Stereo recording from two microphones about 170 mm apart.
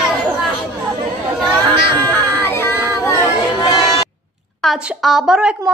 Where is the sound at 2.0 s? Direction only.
10° left (ahead or behind).